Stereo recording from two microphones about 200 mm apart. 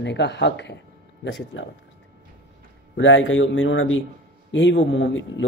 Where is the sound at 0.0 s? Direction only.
60° left (ahead or behind).